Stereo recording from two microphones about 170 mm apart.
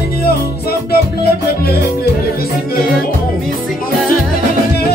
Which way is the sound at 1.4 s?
65° left (ahead or behind).